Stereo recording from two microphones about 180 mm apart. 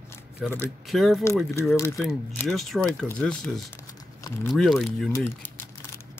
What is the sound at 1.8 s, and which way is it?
Speech, 15° left (ahead or behind).